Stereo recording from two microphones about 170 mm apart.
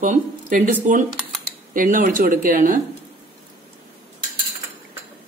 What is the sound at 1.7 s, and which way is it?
Speech, 55° right (ahead or behind).